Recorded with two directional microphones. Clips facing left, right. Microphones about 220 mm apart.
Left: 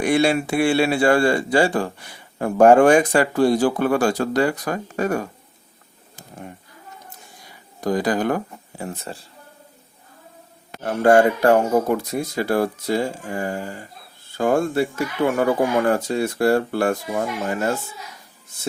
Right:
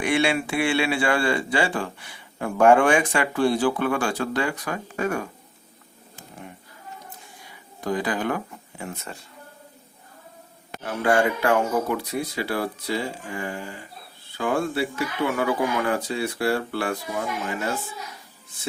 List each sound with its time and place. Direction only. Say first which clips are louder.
0.0 s speech: left 4 dB; 40° left (ahead or behind)
7.8 s speech: left 5 dB; 40° left (ahead or behind)
10.8 s speech: left 6 dB; 45° left (ahead or behind)